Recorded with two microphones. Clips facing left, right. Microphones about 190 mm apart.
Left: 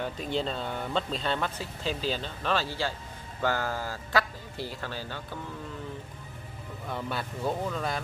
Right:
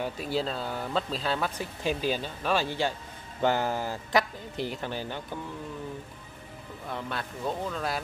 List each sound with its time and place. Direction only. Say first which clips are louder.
0.0 s speech: right 1 dB; 5° right (ahead or behind)
1.6 s speech: right 3 dB; 15° right (ahead or behind)
6.9 s speech: left 1 dB; 5° left (ahead or behind)